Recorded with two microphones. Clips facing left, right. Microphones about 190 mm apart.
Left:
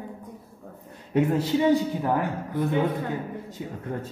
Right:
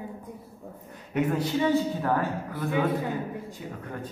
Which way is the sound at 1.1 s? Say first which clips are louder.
Left 4 dB; 25° left (ahead or behind).